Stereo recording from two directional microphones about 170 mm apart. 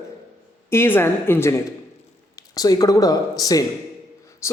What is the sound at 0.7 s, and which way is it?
A man's voice, 15° left (ahead or behind).